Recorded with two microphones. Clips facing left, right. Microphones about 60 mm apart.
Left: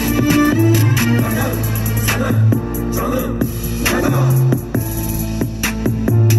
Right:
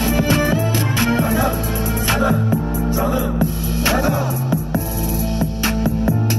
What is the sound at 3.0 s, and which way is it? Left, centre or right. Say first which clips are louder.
Music: left 1 dB; centre.